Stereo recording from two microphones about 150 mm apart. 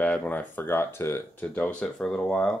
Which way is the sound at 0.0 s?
10° left (ahead or behind).